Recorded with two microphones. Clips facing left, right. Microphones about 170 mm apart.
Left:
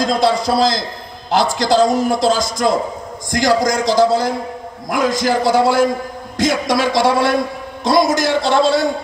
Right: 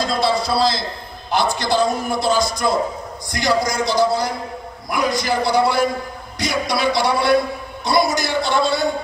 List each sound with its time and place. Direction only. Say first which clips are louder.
0.0 s a man's voice: left 4 dB; 90° left